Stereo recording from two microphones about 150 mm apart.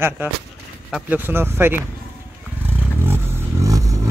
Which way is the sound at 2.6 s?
15° right (ahead or behind).